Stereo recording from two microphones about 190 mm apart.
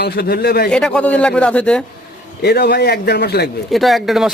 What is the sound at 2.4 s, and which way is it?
Speech, 60° left (ahead or behind).